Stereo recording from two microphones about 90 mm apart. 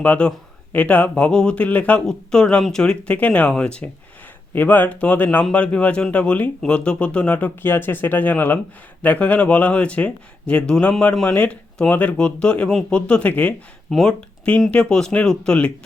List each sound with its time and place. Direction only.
0.0 s speech: 15° left (ahead or behind)